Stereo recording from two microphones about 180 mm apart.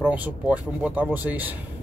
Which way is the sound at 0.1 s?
10° right (ahead or behind).